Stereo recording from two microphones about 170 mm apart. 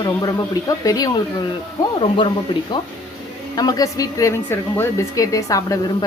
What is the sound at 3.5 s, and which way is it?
Speech, 20° left (ahead or behind).